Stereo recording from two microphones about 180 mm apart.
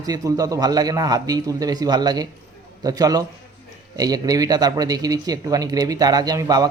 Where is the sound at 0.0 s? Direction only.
20° right (ahead or behind).